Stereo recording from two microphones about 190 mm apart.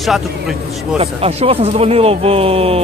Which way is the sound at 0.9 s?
30° right (ahead or behind).